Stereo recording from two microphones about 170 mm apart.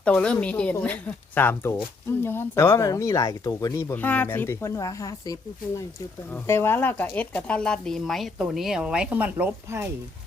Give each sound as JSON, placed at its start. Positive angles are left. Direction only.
{"t": 0.0, "sound": "speech", "side_deg": 5}